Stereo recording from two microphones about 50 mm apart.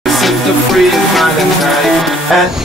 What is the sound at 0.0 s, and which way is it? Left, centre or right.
Music, centre.